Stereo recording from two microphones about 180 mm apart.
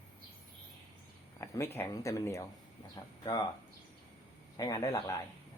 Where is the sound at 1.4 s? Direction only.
15° left (ahead or behind).